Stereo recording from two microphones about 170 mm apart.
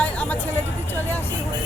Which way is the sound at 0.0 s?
10° left (ahead or behind).